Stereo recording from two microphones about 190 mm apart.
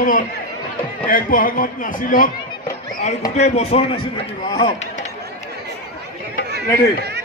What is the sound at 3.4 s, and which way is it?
Speech, 35° left (ahead or behind).